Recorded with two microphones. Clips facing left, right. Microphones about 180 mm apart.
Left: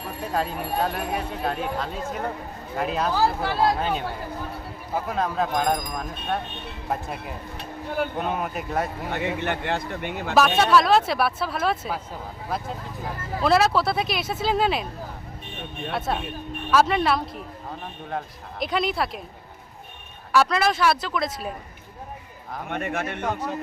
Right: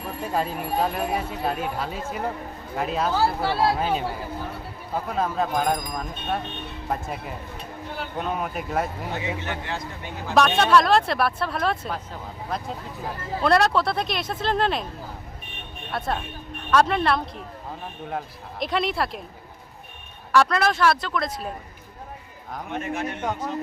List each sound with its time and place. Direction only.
0.3 s speech: centre (ahead or behind)
9.1 s a man's voice: 60° left (ahead or behind)
10.3 s speech: centre (ahead or behind)
15.9 s speech: 5° left (ahead or behind)
18.6 s speech: centre (ahead or behind)
20.3 s speech: 5° left (ahead or behind)
22.7 s a man's voice: 60° left (ahead or behind)